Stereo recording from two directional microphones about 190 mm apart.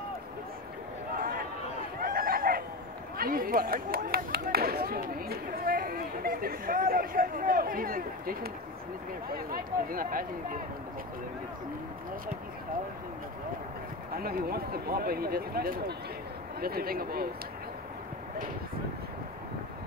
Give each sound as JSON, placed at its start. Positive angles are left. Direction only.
{"t": 2.0, "sound": "a sound", "side_deg": -50}
{"t": 3.2, "sound": "speech", "side_deg": -50}
{"t": 14.1, "sound": "speech", "side_deg": -50}